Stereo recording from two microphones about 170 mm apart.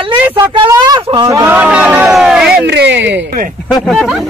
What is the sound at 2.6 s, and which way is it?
Speech, 90° right.